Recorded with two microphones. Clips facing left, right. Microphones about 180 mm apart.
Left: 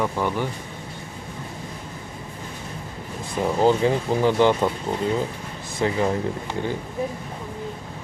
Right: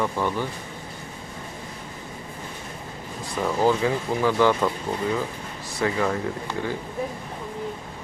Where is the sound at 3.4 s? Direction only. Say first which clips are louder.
Left 3 dB; 25° left (ahead or behind).